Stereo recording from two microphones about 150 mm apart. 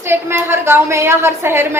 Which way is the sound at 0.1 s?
15° right (ahead or behind).